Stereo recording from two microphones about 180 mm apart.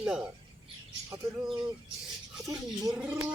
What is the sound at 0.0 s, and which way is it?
Speech, 5° right (ahead or behind).